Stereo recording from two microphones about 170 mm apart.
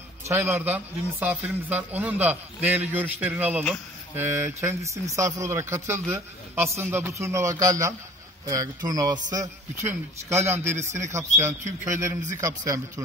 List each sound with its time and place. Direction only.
0.3 s a man's voice: 15° right (ahead or behind)